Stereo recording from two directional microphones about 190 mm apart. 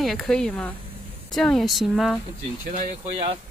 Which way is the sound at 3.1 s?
25° right (ahead or behind).